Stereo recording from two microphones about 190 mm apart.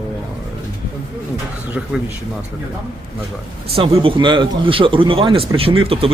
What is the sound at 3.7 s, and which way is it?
Speech, 30° right (ahead or behind).